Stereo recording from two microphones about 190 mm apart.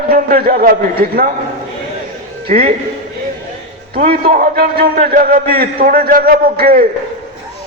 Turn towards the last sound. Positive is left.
turn(degrees=-50)  # may be behind; listen again after turning